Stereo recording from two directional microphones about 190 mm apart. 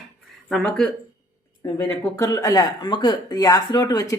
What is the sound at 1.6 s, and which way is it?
Speech, 20° left (ahead or behind).